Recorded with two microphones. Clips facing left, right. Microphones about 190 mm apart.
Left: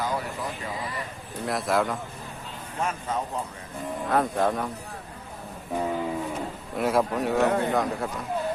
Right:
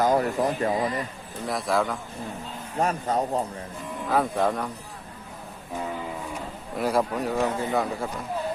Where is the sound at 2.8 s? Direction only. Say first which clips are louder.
Right 4 dB; 35° right (ahead or behind).